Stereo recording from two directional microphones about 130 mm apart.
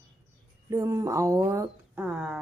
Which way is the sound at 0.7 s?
25° right (ahead or behind).